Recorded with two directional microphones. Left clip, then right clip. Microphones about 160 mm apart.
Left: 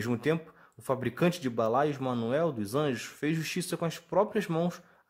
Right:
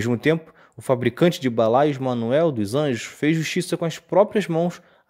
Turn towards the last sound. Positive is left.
turn(degrees=-35)  # may be behind; listen again after turning